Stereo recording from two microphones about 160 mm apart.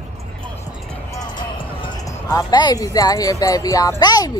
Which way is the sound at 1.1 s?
25° left (ahead or behind).